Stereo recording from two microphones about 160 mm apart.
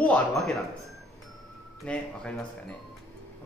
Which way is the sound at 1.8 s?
5° left (ahead or behind).